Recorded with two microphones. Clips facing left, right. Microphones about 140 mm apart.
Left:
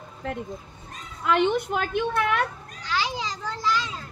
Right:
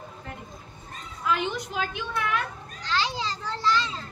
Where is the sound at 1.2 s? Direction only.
65° left (ahead or behind).